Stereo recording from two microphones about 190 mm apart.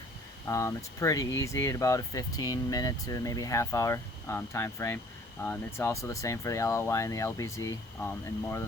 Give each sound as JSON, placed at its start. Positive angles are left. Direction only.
{"t": 0.4, "sound": "speech", "side_deg": 15}